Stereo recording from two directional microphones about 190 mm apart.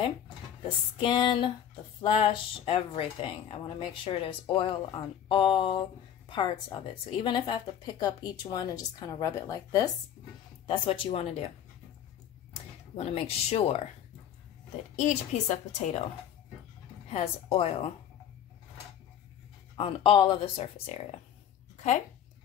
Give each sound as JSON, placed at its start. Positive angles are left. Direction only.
{"t": 0.9, "sound": "speech", "side_deg": 25}
{"t": 12.9, "sound": "a woman's voice", "side_deg": 30}
{"t": 15.0, "sound": "a woman's voice", "side_deg": 40}
{"t": 17.1, "sound": "a woman's voice", "side_deg": 30}
{"t": 19.8, "sound": "speech", "side_deg": 30}